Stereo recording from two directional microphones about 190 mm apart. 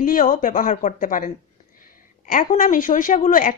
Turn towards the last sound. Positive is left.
turn(degrees=45)  # may be behind; listen again after turning